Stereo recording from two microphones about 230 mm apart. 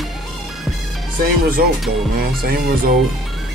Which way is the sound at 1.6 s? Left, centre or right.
Right.